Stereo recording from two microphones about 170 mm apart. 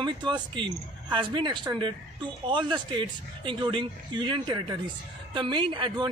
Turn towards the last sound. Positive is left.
turn(degrees=-30)  # may be behind; listen again after turning